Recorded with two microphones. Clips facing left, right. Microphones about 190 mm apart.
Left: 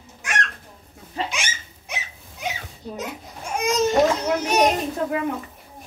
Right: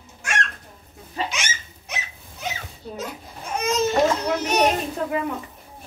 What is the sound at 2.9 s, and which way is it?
Children playing, 15° left (ahead or behind).